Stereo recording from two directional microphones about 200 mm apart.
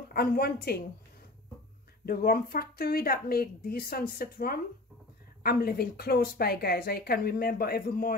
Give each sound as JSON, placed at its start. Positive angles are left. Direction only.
{"t": 0.1, "sound": "a woman's voice", "side_deg": 50}
{"t": 2.0, "sound": "a woman's voice", "side_deg": 50}